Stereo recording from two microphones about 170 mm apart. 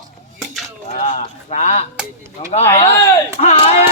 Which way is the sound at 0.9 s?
45° left (ahead or behind).